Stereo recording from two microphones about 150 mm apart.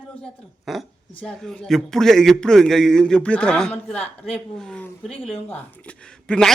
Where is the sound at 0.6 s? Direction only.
Centre (ahead or behind).